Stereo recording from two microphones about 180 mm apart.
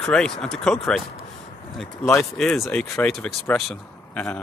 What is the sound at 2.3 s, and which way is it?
Speech, centre (ahead or behind).